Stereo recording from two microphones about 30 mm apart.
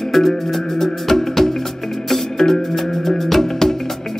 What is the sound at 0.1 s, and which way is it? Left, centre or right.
Music, centre.